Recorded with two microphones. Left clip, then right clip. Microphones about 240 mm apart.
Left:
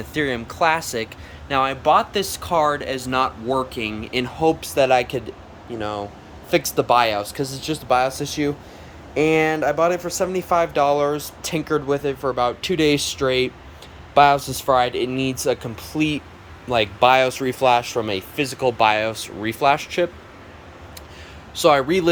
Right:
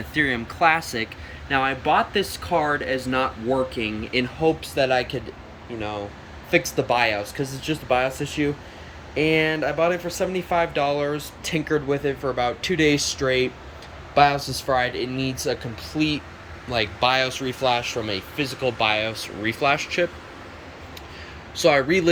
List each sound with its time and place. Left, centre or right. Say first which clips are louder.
0.1 s speech: right 1 dB; centre
21.5 s speech: left 2 dB; centre